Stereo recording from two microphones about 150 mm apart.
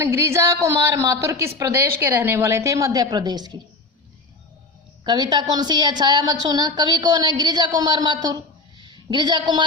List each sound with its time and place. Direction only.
0.0 s a woman's voice: 20° right (ahead or behind)
5.0 s a woman's voice: 30° right (ahead or behind)